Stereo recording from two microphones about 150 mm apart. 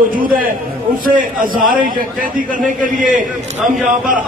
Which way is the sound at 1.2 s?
65° right (ahead or behind).